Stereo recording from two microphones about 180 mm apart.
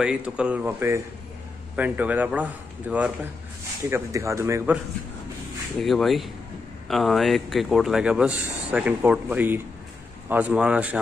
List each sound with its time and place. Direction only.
0.0 s a man's voice: 5° right (ahead or behind)
5.8 s a man's voice: centre (ahead or behind)